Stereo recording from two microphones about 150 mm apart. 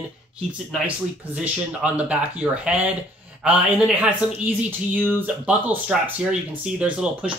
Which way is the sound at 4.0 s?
10° right (ahead or behind).